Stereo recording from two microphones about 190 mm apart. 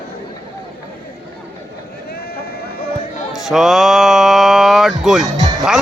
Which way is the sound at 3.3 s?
Centre (ahead or behind).